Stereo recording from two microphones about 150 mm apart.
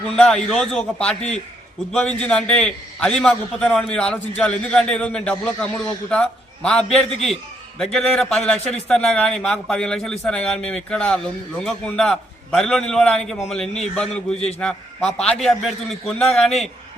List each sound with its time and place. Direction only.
0.0 s a man's voice: 5° left (ahead or behind)